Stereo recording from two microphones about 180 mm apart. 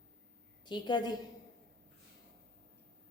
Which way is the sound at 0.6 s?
25° left (ahead or behind).